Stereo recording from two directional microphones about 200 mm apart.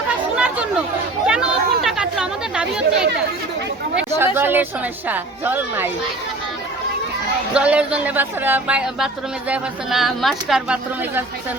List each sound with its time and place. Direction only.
0.3 s chatter: 5° right (ahead or behind)
4.4 s speech: 10° right (ahead or behind)
7.5 s speech: 5° right (ahead or behind)